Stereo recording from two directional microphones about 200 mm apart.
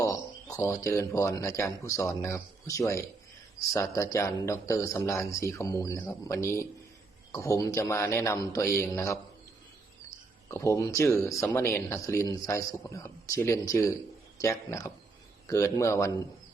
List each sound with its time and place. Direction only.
0.0 s speech: 15° left (ahead or behind)
10.5 s speech: 15° left (ahead or behind)